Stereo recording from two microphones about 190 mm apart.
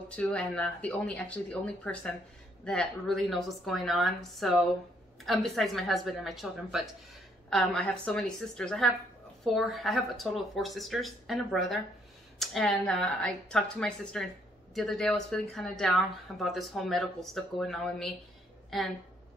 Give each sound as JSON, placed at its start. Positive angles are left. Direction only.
{"t": 0.1, "sound": "speech", "side_deg": 5}